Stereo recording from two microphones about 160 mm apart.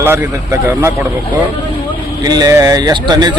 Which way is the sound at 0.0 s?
15° right (ahead or behind).